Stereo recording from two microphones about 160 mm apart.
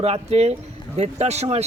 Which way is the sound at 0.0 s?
40° right (ahead or behind).